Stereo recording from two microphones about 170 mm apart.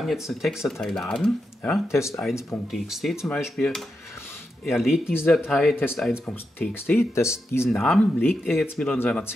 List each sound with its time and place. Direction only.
0.0 s speech: centre (ahead or behind)
1.9 s speech: 15° left (ahead or behind)
2.7 s speech: centre (ahead or behind); by 7.6 s 15° left (ahead or behind)
7.6 s speech: 5° left (ahead or behind)